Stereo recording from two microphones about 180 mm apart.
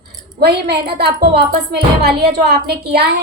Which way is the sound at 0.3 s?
65° right (ahead or behind).